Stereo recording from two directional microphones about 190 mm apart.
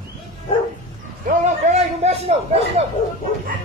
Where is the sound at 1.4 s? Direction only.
35° right (ahead or behind).